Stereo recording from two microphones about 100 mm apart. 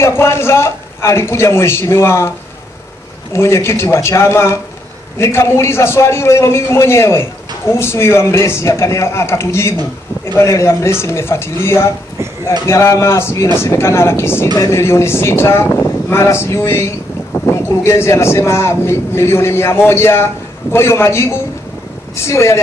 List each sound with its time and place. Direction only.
0.0 s a man's voice: 25° left (ahead or behind)
3.3 s a man's voice: 25° left (ahead or behind)